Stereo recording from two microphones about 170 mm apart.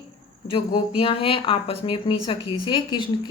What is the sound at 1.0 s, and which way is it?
A woman's voice, 35° left (ahead or behind).